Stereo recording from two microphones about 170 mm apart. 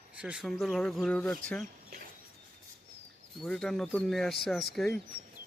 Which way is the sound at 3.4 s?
Centre (ahead or behind).